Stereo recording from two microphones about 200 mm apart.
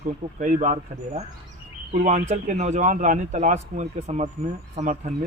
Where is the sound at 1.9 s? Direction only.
35° right (ahead or behind).